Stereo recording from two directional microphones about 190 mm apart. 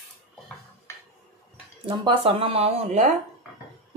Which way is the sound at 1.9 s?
25° right (ahead or behind).